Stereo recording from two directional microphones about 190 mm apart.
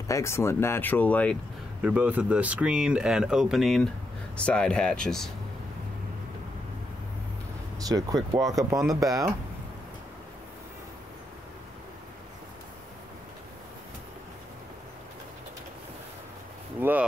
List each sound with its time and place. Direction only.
0.1 s speech: 15° left (ahead or behind)
1.8 s speech: 5° right (ahead or behind)
7.8 s speech: 20° right (ahead or behind)
16.8 s speech: 10° right (ahead or behind)